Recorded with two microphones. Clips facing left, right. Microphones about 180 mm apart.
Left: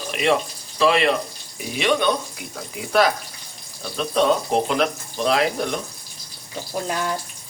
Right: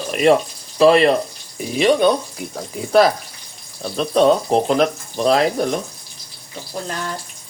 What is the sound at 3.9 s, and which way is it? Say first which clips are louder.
Speech: right 5 dB; 35° right (ahead or behind).